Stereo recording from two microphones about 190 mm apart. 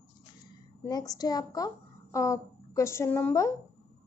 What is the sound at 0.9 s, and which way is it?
A child's voice, 20° left (ahead or behind).